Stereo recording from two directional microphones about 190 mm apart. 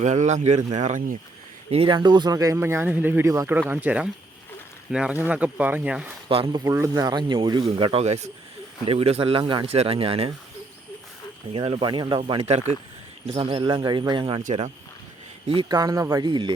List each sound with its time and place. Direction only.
0.0 s speech: 40° right (ahead or behind)
1.7 s speech: 25° right (ahead or behind); by 6.1 s 5° right (ahead or behind)
6.2 s speech: 25° right (ahead or behind)
6.7 s speech: 15° right (ahead or behind)
11.5 s speech: 30° right (ahead or behind)
14.4 s speech: 35° right (ahead or behind)
15.4 s speech: 25° right (ahead or behind)